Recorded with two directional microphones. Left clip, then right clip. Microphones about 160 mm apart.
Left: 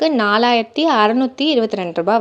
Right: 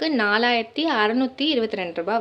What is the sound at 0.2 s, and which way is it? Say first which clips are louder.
A woman's voice: left 5 dB; 40° left (ahead or behind).